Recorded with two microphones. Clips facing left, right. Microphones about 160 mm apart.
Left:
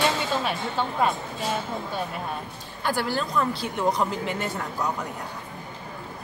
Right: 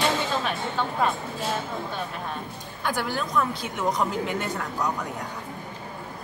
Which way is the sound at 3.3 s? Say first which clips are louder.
Left 1 dB; centre (ahead or behind).